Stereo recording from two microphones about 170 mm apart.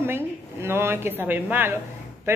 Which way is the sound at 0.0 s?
15° right (ahead or behind).